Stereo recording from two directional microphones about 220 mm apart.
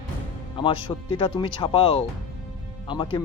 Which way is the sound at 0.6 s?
20° left (ahead or behind).